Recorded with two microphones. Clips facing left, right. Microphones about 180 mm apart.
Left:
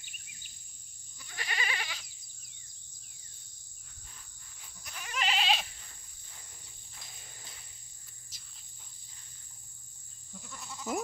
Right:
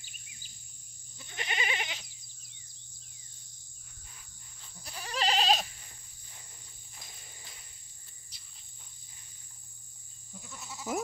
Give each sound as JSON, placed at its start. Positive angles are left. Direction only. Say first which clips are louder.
{"t": 1.1, "sound": "goat", "louder": "right 2 dB", "side_deg": -25}
{"t": 4.8, "sound": "goat", "louder": "right 3 dB", "side_deg": -35}
{"t": 10.3, "sound": "goat", "louder": "even", "side_deg": 0}